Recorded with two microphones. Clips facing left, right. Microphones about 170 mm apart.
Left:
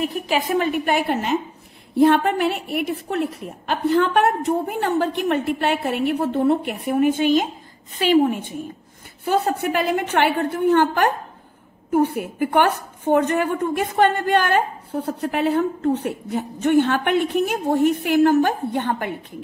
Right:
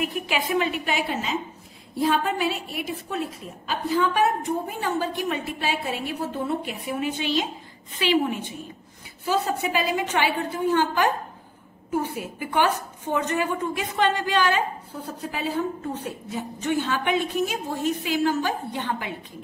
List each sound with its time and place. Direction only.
0.0 s a woman's voice: 40° left (ahead or behind)